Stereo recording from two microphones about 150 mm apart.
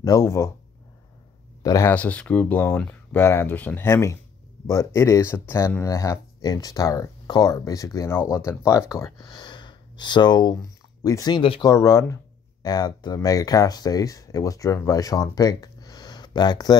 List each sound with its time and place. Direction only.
0.0 s speech: 20° left (ahead or behind)
1.6 s speech: 20° left (ahead or behind)
2.0 s speech: 10° left (ahead or behind); by 11.6 s 35° left (ahead or behind)
11.6 s speech: 20° left (ahead or behind)